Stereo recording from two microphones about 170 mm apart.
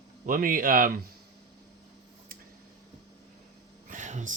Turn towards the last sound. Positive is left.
turn(degrees=-45)  # may be behind; listen again after turning